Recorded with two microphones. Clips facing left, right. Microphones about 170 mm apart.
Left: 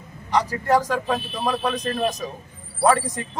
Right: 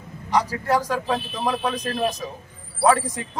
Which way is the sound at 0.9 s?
10° right (ahead or behind).